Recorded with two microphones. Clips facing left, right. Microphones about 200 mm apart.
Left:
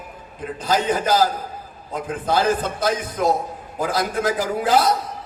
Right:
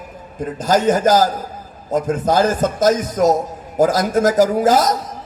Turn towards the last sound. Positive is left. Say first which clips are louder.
# right 4 dB
turn(degrees=-45)  # may be behind; listen again after turning